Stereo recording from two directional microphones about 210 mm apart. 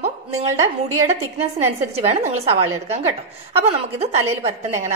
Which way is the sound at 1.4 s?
30° right (ahead or behind).